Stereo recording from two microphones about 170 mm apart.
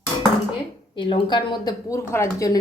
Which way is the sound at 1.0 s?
30° left (ahead or behind).